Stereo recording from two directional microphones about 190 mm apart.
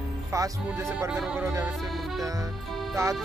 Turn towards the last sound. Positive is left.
turn(degrees=-15)  # may be behind; listen again after turning